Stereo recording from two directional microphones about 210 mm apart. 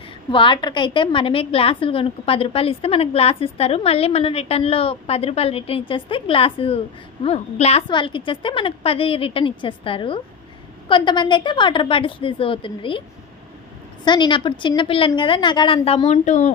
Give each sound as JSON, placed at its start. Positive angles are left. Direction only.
{"t": 0.3, "sound": "a woman's voice", "side_deg": 25}
{"t": 14.0, "sound": "a woman's voice", "side_deg": 20}